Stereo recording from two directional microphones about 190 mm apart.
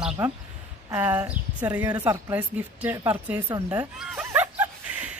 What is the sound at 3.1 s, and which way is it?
Dog, 10° right (ahead or behind).